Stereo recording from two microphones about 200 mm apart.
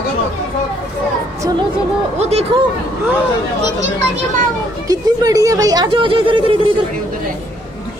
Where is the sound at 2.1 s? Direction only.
30° right (ahead or behind).